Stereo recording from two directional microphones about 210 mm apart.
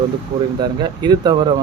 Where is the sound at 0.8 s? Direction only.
20° right (ahead or behind).